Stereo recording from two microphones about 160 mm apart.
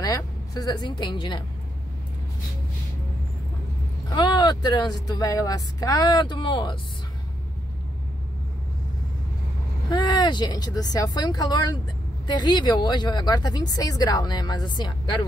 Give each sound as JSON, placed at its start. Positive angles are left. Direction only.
{"t": 0.0, "sound": "a woman's voice", "side_deg": 25}
{"t": 4.1, "sound": "speech", "side_deg": 25}
{"t": 9.8, "sound": "speech", "side_deg": 25}